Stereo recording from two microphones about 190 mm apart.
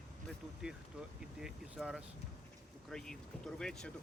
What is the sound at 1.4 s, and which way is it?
Speech, 5° right (ahead or behind).